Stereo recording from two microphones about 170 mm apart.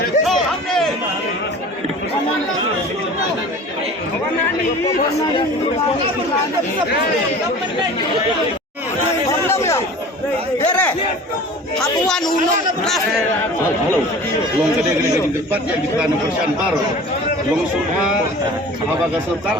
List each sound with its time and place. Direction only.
0.3 s a sound: centre (ahead or behind)
9.5 s chatter: 15° left (ahead or behind)
10.7 s a man's voice: 10° left (ahead or behind)